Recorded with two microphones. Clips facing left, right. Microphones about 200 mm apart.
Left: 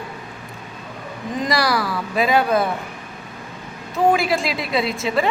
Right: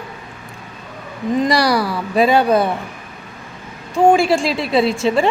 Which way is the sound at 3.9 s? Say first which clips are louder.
Right 5 dB; 30° right (ahead or behind).